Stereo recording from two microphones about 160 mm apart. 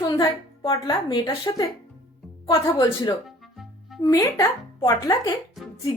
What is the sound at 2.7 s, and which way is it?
Speech, 25° left (ahead or behind).